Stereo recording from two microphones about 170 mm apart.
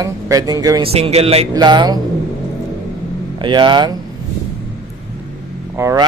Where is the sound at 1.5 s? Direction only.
25° right (ahead or behind).